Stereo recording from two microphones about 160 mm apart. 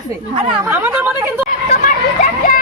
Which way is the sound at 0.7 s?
10° right (ahead or behind).